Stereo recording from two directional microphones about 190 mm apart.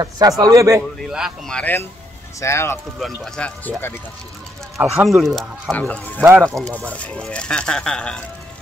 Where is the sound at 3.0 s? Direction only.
Centre (ahead or behind).